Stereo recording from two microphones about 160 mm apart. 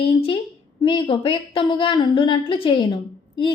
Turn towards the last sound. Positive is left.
turn(degrees=30)  # may be behind; listen again after turning